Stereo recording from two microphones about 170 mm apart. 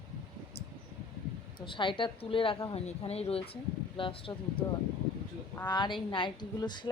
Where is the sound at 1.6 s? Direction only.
30° left (ahead or behind).